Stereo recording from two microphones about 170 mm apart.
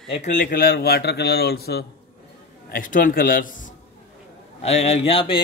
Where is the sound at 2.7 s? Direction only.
55° left (ahead or behind).